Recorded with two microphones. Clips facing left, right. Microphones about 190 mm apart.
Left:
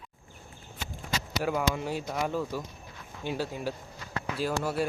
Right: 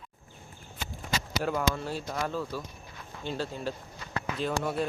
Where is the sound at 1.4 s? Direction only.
10° left (ahead or behind).